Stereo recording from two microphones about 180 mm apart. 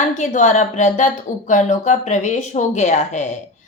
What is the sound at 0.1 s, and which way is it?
A woman's voice, 40° left (ahead or behind).